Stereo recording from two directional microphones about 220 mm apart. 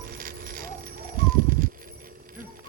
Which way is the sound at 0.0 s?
40° right (ahead or behind).